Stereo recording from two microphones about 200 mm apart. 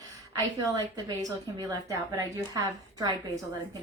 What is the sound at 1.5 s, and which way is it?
A woman's voice, 15° right (ahead or behind).